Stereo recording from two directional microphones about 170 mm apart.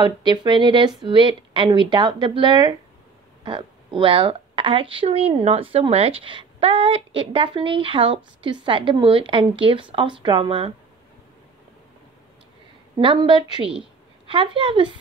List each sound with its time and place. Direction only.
0.0 s a woman's voice: 25° right (ahead or behind)
13.0 s a woman's voice: 30° right (ahead or behind)